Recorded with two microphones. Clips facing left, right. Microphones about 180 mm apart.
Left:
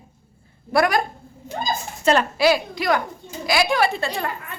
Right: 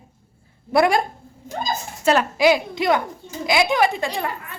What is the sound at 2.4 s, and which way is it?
A woman's voice, 20° right (ahead or behind).